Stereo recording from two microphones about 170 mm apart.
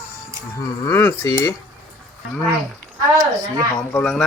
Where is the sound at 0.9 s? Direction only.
15° left (ahead or behind).